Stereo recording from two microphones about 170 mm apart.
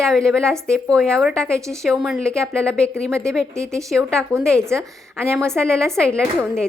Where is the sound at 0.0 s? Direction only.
5° left (ahead or behind).